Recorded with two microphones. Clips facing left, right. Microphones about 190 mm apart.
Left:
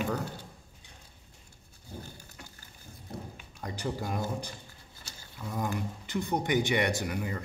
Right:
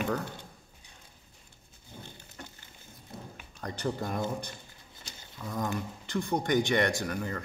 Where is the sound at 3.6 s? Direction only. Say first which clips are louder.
Right 1 dB; 10° left (ahead or behind).